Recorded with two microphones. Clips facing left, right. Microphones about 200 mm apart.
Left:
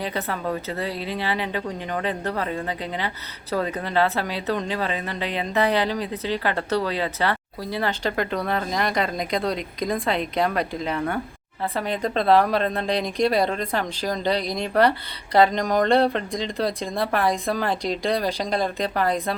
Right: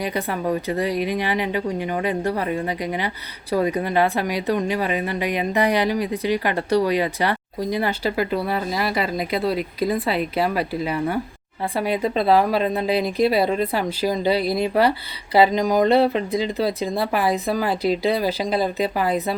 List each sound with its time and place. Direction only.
0.0 s a woman's voice: 15° right (ahead or behind)